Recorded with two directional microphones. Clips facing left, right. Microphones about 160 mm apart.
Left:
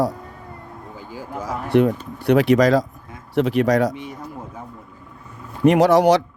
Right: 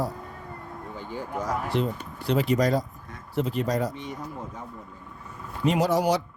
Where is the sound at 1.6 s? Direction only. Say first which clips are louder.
Left 10 dB; 65° left (ahead or behind); by 2.8 s 90° left.